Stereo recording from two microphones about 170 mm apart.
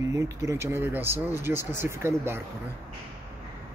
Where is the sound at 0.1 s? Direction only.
20° right (ahead or behind).